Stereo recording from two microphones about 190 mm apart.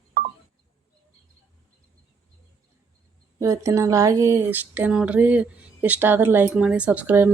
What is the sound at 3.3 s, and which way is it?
Speech, 15° right (ahead or behind).